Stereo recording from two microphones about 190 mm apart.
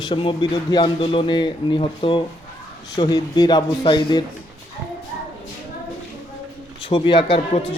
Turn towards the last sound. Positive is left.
turn(degrees=30)  # may be behind; listen again after turning